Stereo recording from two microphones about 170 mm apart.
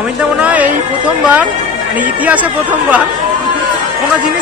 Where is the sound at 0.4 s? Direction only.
10° right (ahead or behind).